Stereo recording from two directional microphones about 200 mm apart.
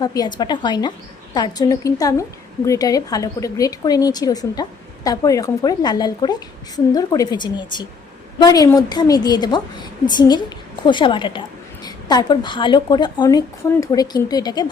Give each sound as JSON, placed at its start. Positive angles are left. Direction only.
{"t": 0.0, "sound": "a woman's voice", "side_deg": 20}